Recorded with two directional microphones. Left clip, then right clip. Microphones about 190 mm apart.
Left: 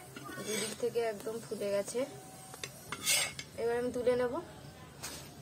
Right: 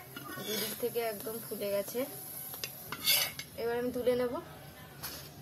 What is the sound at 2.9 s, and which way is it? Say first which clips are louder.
Dishes: right 2 dB; 5° left (ahead or behind).